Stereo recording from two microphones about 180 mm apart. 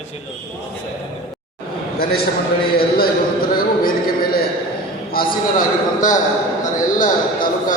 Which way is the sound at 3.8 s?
55° left (ahead or behind).